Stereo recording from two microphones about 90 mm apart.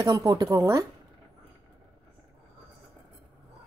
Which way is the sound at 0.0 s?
40° right (ahead or behind).